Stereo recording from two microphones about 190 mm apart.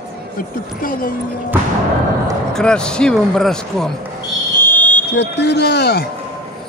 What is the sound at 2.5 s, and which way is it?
A man's voice, 5° left (ahead or behind).